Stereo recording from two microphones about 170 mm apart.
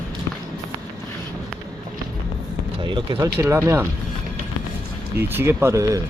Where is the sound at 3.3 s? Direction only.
15° right (ahead or behind).